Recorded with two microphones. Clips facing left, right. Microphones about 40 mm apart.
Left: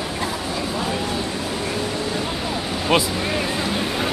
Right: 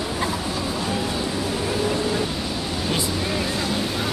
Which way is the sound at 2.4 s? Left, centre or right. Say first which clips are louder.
Left 3 dB; left.